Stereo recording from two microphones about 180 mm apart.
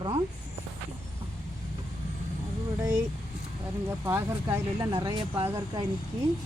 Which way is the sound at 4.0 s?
15° right (ahead or behind).